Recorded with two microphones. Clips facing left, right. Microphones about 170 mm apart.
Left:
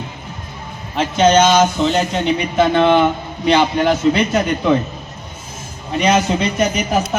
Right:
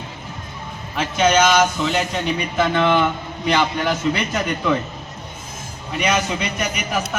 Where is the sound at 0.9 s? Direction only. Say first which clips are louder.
Left 4 dB; 30° left (ahead or behind).